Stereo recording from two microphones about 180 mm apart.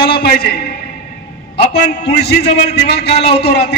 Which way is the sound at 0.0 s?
65° left (ahead or behind).